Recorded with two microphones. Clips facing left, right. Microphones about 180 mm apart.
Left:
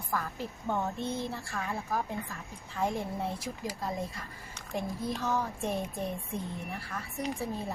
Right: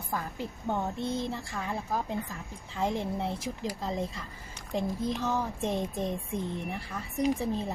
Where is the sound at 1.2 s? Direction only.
20° right (ahead or behind).